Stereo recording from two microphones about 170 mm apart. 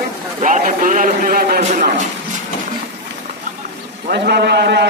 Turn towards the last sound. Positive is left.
turn(degrees=-80)